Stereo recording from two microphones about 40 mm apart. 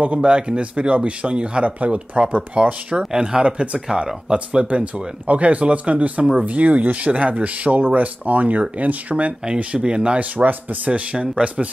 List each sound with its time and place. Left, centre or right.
0.0 s speech: right
3.0 s speech: centre
10.3 s speech: right
10.9 s speech: right